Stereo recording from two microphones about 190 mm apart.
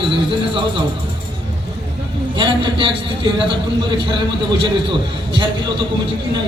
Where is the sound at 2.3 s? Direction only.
25° right (ahead or behind).